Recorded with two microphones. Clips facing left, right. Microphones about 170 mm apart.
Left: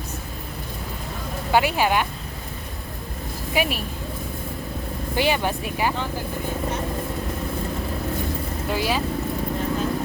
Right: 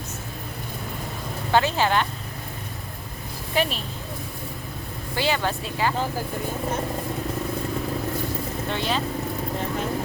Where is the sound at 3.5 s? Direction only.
10° left (ahead or behind).